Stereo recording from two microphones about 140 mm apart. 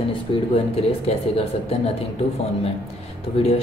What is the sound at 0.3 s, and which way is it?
A woman's voice, 35° left (ahead or behind).